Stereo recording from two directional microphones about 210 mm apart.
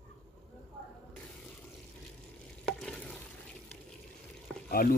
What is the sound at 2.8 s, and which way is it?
Stir, 5° left (ahead or behind).